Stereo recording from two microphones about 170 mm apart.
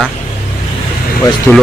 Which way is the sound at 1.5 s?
10° left (ahead or behind).